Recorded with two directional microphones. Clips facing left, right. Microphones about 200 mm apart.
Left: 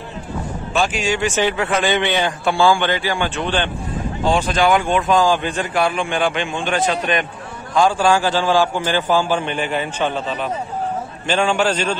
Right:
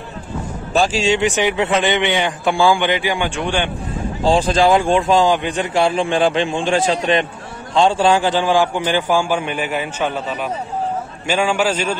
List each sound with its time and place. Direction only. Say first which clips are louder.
0.7 s a man's voice: right 4 dB; 30° right (ahead or behind); by 3.7 s 15° right (ahead or behind)
4.2 s a man's voice: right 3 dB; 30° right (ahead or behind); by 12.0 s 10° right (ahead or behind)